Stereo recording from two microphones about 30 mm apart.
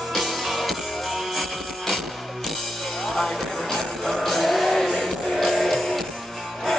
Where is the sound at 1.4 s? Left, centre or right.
Centre.